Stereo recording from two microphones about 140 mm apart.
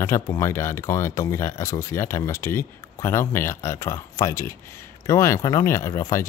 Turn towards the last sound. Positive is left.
turn(degrees=20)  # may be behind; listen again after turning